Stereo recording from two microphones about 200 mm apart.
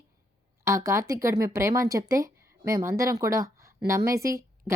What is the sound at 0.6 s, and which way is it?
A woman's voice, 15° right (ahead or behind).